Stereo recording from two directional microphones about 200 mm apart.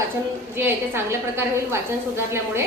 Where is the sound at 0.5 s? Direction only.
10° right (ahead or behind).